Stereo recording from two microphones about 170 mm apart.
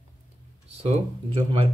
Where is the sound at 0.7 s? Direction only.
35° right (ahead or behind).